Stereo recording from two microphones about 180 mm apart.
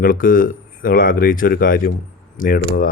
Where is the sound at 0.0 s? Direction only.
50° left (ahead or behind).